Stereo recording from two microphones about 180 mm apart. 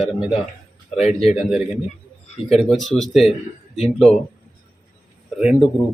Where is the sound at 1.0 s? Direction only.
35° left (ahead or behind).